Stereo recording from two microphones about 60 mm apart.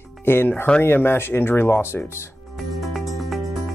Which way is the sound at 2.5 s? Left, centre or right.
Centre.